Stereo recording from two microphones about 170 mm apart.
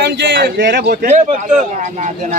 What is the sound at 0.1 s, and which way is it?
Speech, 80° right.